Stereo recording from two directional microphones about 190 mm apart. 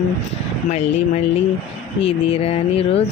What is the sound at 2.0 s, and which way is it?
Speech, 30° left (ahead or behind).